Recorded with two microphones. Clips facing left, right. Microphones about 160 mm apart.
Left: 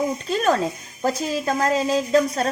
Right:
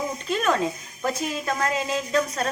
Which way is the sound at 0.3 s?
35° left (ahead or behind).